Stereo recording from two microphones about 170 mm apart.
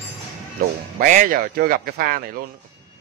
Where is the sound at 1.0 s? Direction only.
50° right (ahead or behind).